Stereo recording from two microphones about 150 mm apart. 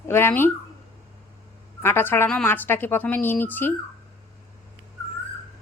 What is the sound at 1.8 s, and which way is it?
Speech, 15° left (ahead or behind).